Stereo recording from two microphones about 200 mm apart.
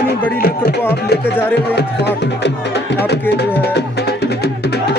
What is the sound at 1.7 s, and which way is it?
Speech, 60° left (ahead or behind).